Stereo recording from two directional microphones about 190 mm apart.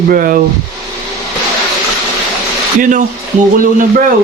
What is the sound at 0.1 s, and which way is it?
Speech, 50° right (ahead or behind).